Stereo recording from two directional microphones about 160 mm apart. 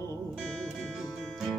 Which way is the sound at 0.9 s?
Centre (ahead or behind).